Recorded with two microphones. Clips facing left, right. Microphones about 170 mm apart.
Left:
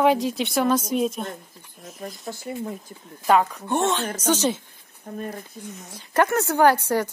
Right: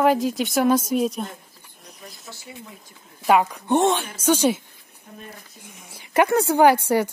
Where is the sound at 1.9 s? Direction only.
45° left (ahead or behind).